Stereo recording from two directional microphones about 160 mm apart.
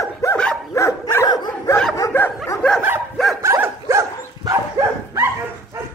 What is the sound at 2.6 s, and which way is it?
Dog, 5° left (ahead or behind).